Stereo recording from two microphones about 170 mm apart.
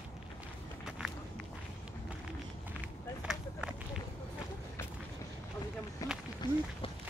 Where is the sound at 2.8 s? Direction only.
5° right (ahead or behind).